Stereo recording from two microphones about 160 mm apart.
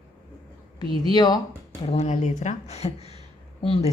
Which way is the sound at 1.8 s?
40° left (ahead or behind).